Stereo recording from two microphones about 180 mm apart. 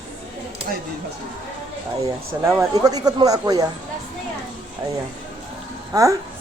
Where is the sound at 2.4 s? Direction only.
20° right (ahead or behind).